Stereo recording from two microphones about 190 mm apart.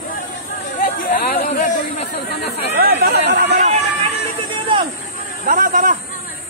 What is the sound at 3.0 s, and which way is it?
Chatter, 50° right (ahead or behind).